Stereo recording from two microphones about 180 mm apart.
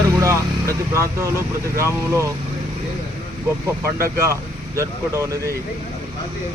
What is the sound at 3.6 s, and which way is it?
Speech, 15° right (ahead or behind).